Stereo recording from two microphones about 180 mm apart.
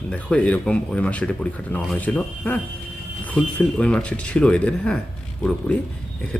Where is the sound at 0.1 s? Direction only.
5° left (ahead or behind).